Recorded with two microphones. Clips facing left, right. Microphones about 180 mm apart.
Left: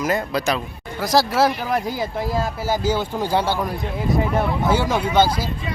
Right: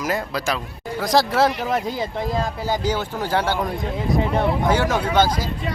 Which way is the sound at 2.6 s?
10° left (ahead or behind).